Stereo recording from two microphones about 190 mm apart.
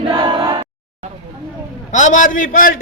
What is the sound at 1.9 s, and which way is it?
Speech, 40° left (ahead or behind).